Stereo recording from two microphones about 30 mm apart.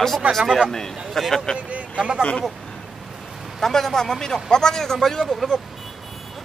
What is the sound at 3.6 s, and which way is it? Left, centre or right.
Speech, centre.